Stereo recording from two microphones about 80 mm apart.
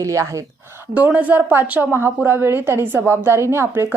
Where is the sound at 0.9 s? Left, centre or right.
Centre.